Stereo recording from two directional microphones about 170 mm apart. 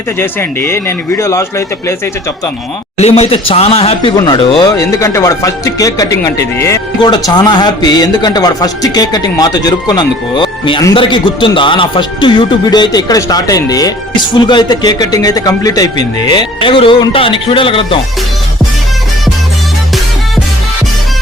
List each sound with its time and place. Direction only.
0.2 s speech: 15° left (ahead or behind)
3.0 s speech: 40° left (ahead or behind)
4.8 s speech: 15° left (ahead or behind)